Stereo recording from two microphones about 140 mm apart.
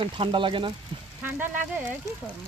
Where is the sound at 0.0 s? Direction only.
40° right (ahead or behind).